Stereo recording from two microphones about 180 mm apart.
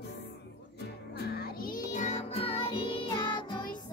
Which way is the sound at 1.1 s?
60° left (ahead or behind).